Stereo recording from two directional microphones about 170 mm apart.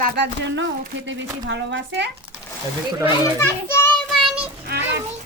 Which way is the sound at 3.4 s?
15° left (ahead or behind).